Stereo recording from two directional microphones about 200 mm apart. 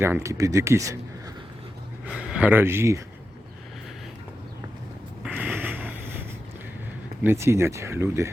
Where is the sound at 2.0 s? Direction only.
5° right (ahead or behind).